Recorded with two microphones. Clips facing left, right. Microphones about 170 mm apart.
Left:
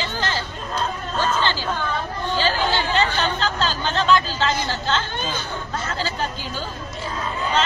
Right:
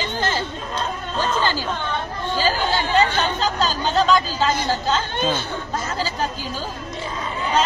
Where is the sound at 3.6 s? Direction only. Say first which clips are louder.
Right 2 dB; 40° right (ahead or behind).